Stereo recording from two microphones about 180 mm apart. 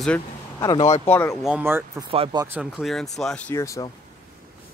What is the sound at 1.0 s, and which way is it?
Speech, 10° left (ahead or behind).